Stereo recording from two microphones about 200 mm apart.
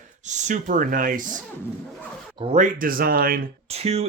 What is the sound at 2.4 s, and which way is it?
Speech, 35° right (ahead or behind).